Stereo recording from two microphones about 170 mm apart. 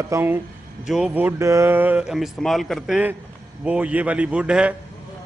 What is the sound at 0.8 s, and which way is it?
A man's voice, 5° right (ahead or behind).